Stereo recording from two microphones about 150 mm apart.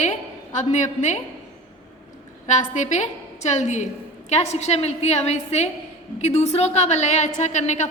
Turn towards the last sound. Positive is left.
turn(degrees=50)  # may be behind; listen again after turning